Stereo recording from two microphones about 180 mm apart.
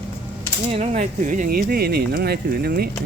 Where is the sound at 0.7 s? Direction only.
40° right (ahead or behind).